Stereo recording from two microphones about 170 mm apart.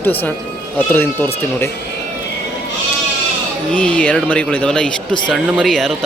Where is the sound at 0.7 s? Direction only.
10° left (ahead or behind).